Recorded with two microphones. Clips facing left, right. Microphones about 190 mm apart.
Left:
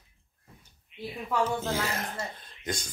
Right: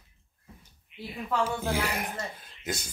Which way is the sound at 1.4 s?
15° right (ahead or behind).